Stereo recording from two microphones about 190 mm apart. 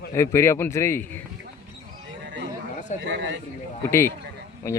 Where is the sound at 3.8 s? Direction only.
15° left (ahead or behind).